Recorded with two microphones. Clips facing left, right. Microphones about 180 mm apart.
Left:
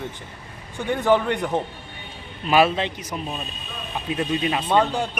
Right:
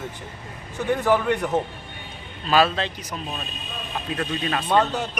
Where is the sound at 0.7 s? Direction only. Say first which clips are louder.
Left 1 dB; 5° right (ahead or behind).